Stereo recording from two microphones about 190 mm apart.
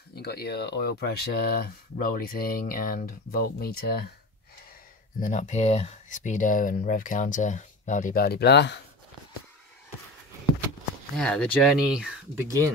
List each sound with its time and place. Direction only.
0.1 s speech: 55° left (ahead or behind)
5.2 s speech: 40° left (ahead or behind); by 8.7 s 65° left (ahead or behind)
11.1 s speech: 5° left (ahead or behind)
12.4 s speech: 15° right (ahead or behind)